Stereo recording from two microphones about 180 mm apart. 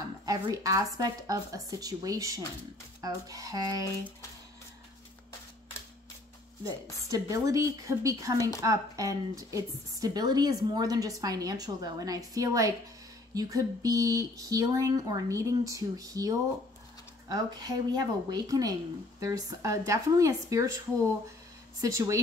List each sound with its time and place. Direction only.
0.2 s a woman's voice: 20° right (ahead or behind)
7.1 s a woman's voice: 20° right (ahead or behind)
21.8 s speech: 15° right (ahead or behind)